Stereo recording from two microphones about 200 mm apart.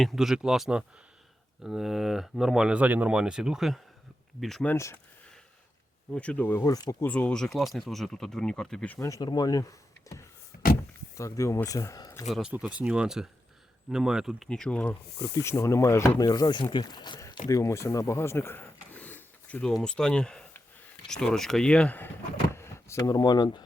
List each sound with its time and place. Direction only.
0.0 s speech: centre (ahead or behind)
6.1 s speech: 5° left (ahead or behind)
7.1 s speech: 5° left (ahead or behind)
10.5 s door: 45° left (ahead or behind)
11.2 s speech: 15° left (ahead or behind)
12.3 s speech: 5° right (ahead or behind); by 23.6 s 20° left (ahead or behind)